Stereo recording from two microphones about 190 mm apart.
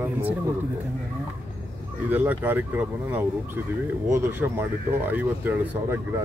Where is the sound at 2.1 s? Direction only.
10° right (ahead or behind).